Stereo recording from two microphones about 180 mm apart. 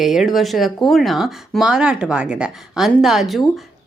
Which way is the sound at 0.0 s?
Centre (ahead or behind).